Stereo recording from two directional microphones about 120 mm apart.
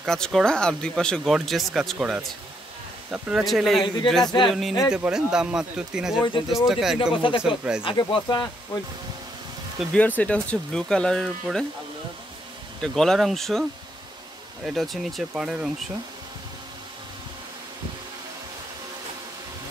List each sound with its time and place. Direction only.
0.0 s speech: 5° left (ahead or behind)
3.3 s speech: 5° right (ahead or behind)
4.2 s speech: 35° left (ahead or behind)
4.5 s speech: centre (ahead or behind)
7.2 s speech: 45° left (ahead or behind)
7.4 s speech: 5° right (ahead or behind)
7.8 s speech: 40° left (ahead or behind)
9.9 s speech: 10° left (ahead or behind)
12.8 s speech: 5° left (ahead or behind)
14.7 s speech: centre (ahead or behind)